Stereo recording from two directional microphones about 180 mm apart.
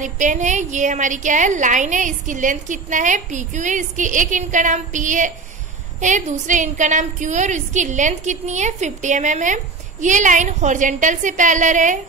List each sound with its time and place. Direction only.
0.0 s a woman's voice: 45° right (ahead or behind)